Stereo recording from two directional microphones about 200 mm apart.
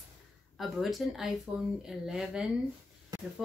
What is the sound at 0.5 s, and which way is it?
Speech, centre (ahead or behind).